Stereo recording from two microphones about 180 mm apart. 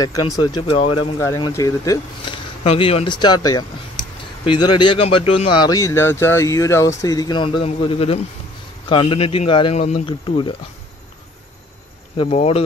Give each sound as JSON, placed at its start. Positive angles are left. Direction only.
{"t": 0.0, "sound": "speech", "side_deg": 20}
{"t": 1.2, "sound": "speech", "side_deg": 15}
{"t": 2.6, "sound": "speech", "side_deg": 35}
{"t": 12.2, "sound": "speech", "side_deg": 35}